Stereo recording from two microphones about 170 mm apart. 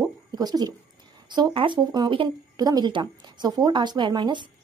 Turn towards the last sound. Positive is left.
turn(degrees=-25)  # may be behind; listen again after turning